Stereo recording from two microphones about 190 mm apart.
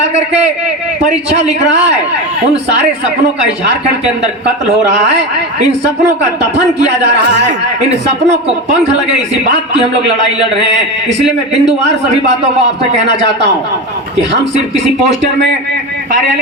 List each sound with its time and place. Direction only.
1.0 s a man's voice: 35° right (ahead or behind)
6.7 s a man's voice: 65° right (ahead or behind)
11.3 s a man's voice: 65° right (ahead or behind)